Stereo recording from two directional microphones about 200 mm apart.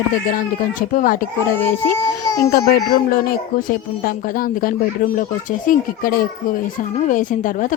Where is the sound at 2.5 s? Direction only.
50° left (ahead or behind).